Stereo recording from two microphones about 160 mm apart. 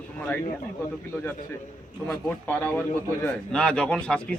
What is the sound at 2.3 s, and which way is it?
Speech, 10° left (ahead or behind).